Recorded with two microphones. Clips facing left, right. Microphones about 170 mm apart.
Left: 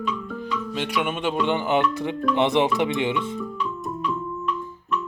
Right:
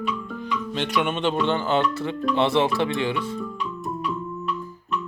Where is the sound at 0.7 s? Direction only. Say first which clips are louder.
Right 2 dB; 5° left (ahead or behind).